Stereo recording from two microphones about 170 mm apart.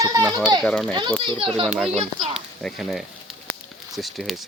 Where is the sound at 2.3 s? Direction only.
Centre (ahead or behind).